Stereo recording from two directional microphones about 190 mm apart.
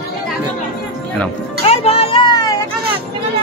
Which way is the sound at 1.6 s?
35° left (ahead or behind).